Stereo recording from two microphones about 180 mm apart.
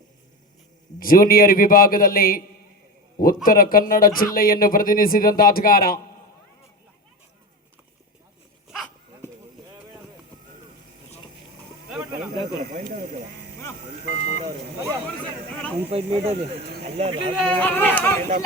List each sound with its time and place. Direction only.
0.9 s speech: 55° left (ahead or behind)
12.7 s speech: 45° right (ahead or behind)
14.0 s speech: 40° left (ahead or behind)
15.9 s speech: 30° right (ahead or behind)
17.4 s speech: 10° left (ahead or behind)